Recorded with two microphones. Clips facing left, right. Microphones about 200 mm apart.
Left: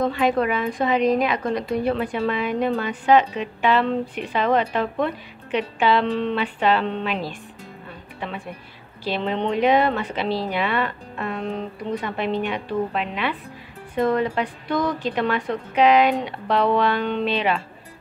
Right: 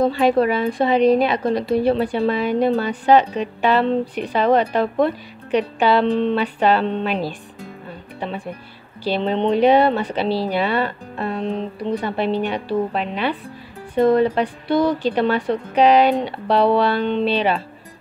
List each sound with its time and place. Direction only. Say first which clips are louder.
0.0 s a woman's voice: right 4 dB; 30° right (ahead or behind)
9.0 s a woman's voice: right 4 dB; 30° right (ahead or behind)